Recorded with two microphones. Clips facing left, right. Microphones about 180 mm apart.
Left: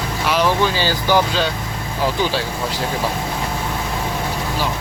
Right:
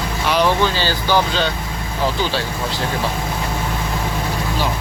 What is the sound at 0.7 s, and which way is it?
Speech, 15° left (ahead or behind).